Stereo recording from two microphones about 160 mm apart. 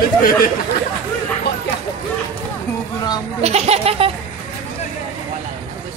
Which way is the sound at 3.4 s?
40° right (ahead or behind).